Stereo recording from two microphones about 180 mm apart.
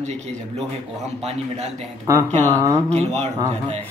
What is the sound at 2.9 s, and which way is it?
Speech, 35° right (ahead or behind).